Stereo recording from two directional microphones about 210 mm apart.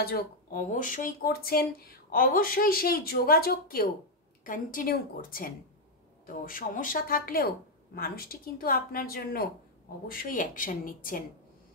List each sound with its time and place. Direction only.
0.1 s speech: 40° left (ahead or behind)